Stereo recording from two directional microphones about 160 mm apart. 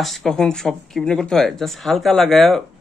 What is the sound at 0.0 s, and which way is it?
A man's voice, centre (ahead or behind).